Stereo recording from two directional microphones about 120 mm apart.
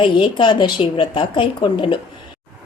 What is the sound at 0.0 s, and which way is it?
A woman's voice, 45° left (ahead or behind).